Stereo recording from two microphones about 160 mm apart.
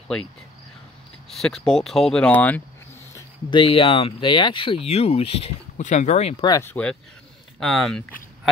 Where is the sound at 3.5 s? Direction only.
30° left (ahead or behind).